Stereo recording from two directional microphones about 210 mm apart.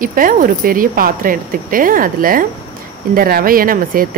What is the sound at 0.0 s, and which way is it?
A woman's voice, 40° right (ahead or behind).